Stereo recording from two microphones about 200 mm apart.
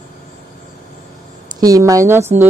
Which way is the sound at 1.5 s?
15° right (ahead or behind).